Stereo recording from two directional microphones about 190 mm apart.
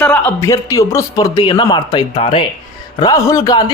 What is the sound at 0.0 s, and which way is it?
Speech, 5° left (ahead or behind).